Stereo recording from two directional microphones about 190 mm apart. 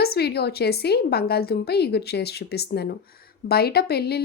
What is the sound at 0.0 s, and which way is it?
A woman's voice, 55° left (ahead or behind).